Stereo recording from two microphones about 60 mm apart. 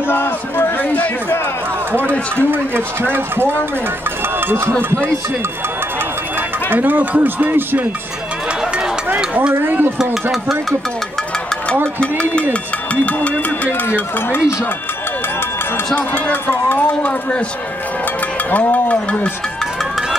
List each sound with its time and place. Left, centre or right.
0.1 s speech: left
1.9 s speech: right
4.5 s speech: right
6.7 s speech: right
9.5 s speech: right
12.0 s speech: left
13.9 s speech: left
15.9 s speech: left
18.5 s speech: left